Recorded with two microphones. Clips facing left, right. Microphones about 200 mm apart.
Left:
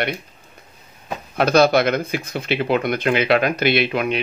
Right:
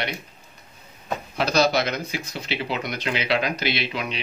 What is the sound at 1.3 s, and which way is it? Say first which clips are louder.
Speech: left 6 dB; 55° left (ahead or behind).